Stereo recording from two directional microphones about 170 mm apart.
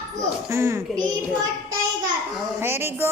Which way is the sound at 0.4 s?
15° right (ahead or behind).